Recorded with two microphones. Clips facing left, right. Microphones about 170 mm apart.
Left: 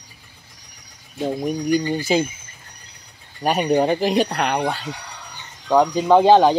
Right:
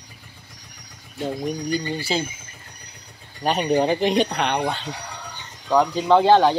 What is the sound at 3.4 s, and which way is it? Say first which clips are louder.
Speech: left 2 dB; 5° left (ahead or behind).